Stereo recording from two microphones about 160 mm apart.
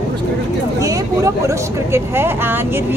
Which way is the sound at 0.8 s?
20° right (ahead or behind).